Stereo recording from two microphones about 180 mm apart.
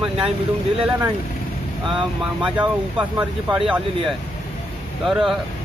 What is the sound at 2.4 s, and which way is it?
Speech, 10° right (ahead or behind).